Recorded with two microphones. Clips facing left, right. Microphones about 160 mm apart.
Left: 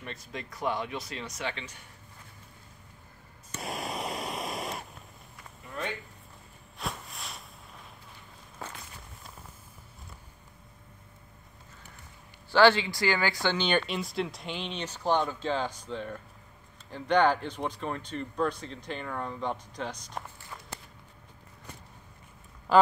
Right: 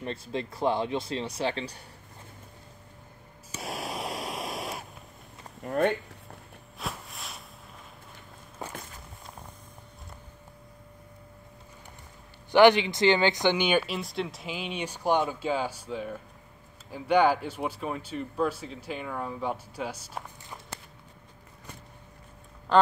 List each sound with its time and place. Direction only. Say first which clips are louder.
0.0 s speech: right 8 dB; 30° right (ahead or behind)
3.5 s a sound: even; centre (ahead or behind)
5.6 s speech: right 11 dB; 50° right (ahead or behind)
6.8 s a sound: even; centre (ahead or behind)
8.6 s walk: right 3 dB; 15° right (ahead or behind)
12.4 s speech: right 3 dB; 20° right (ahead or behind)
22.7 s quack: even; 5° left (ahead or behind)